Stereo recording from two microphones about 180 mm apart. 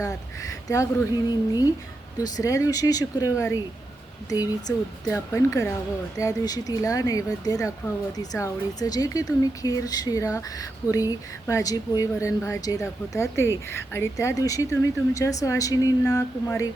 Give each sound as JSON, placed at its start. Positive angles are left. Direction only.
{"t": 0.0, "sound": "speech", "side_deg": 20}
{"t": 2.1, "sound": "speech", "side_deg": 20}